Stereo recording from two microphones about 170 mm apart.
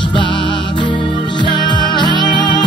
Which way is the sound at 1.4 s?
25° left (ahead or behind).